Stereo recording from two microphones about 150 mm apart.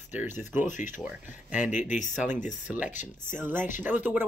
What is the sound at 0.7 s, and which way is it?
Speech, 60° left (ahead or behind).